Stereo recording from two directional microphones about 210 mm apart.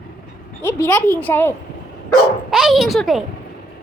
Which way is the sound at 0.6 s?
10° left (ahead or behind).